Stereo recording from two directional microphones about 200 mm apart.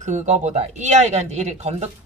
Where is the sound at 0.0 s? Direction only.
35° right (ahead or behind).